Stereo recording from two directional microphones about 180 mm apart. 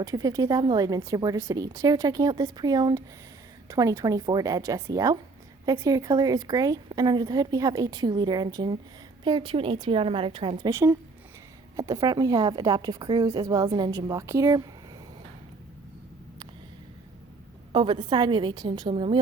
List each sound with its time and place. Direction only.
0.0 s a woman's voice: 20° right (ahead or behind)
10.7 s a woman's voice: 15° right (ahead or behind)
17.7 s a woman's voice: 30° right (ahead or behind)